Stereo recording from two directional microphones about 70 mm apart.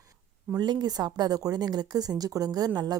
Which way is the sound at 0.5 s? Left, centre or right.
Right.